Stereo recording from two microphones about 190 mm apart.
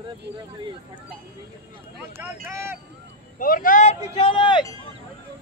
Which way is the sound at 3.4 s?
45° left (ahead or behind).